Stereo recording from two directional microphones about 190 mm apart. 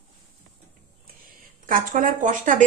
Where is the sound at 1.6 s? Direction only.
45° right (ahead or behind).